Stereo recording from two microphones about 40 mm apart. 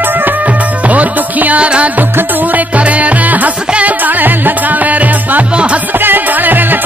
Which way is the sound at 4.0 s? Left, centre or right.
Right.